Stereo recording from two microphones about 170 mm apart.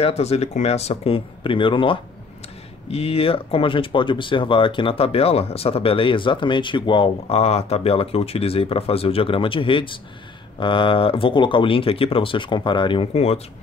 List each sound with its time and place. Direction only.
0.0 s speech: 40° left (ahead or behind)